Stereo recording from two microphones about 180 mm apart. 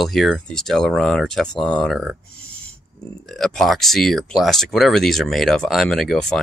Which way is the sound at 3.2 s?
Centre (ahead or behind).